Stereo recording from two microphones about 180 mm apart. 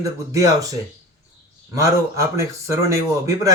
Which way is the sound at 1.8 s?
15° right (ahead or behind).